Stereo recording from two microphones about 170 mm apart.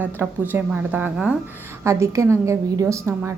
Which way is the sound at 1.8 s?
15° right (ahead or behind).